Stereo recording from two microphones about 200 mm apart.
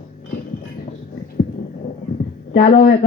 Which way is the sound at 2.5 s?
30° left (ahead or behind).